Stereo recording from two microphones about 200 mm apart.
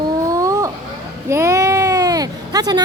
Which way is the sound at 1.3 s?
15° right (ahead or behind).